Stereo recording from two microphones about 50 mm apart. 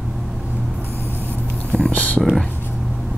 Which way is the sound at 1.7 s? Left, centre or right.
Left.